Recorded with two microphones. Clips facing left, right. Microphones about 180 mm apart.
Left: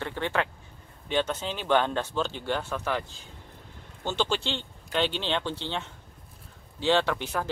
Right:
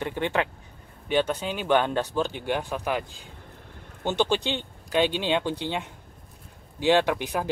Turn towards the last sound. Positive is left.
turn(degrees=-15)  # may be behind; listen again after turning